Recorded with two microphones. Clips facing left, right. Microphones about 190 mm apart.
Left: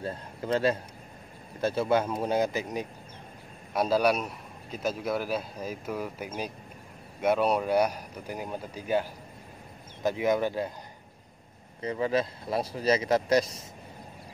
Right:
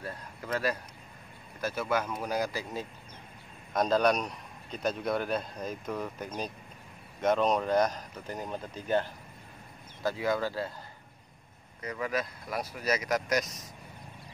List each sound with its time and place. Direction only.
0.0 s a sound: 25° left (ahead or behind)
1.6 s speech: 30° left (ahead or behind)
3.7 s a man's voice: 10° left (ahead or behind)
10.0 s speech: 20° left (ahead or behind)
11.8 s speech: 30° left (ahead or behind)